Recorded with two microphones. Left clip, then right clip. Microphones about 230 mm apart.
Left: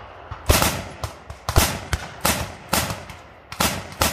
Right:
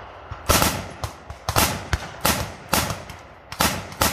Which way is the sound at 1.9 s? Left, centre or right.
Left.